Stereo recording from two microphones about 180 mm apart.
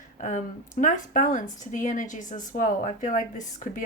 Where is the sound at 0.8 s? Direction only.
45° left (ahead or behind).